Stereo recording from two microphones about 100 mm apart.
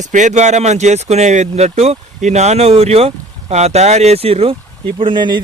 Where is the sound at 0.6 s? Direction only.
90° right.